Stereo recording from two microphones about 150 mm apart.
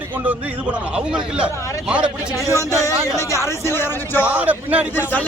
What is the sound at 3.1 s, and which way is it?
Speech, 20° left (ahead or behind).